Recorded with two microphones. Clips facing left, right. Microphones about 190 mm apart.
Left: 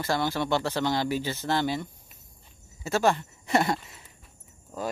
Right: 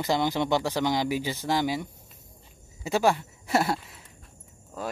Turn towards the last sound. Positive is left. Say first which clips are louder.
# left 2 dB
turn(degrees=0)  # may be behind; listen again after turning